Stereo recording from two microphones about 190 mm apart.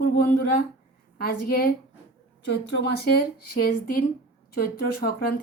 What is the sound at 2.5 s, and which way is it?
A woman's voice, 65° left (ahead or behind).